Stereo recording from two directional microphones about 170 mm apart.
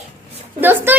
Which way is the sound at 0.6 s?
10° right (ahead or behind).